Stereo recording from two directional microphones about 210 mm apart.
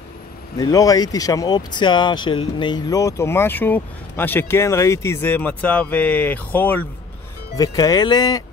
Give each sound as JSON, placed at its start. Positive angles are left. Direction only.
{"t": 0.6, "sound": "speech", "side_deg": 15}